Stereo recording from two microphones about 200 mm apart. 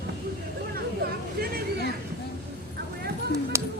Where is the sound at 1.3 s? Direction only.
50° right (ahead or behind).